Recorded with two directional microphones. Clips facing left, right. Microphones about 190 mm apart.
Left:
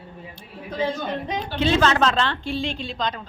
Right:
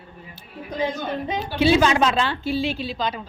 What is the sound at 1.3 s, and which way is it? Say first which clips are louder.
A woman's voice: right 4 dB; 5° right (ahead or behind).